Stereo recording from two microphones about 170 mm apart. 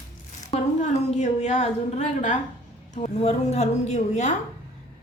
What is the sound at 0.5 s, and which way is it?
A woman's voice, 40° left (ahead or behind).